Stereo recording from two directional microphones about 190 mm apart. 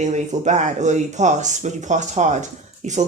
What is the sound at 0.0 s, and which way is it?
Speech, 40° right (ahead or behind).